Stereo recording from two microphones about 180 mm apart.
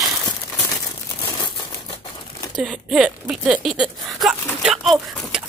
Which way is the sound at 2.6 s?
5° right (ahead or behind).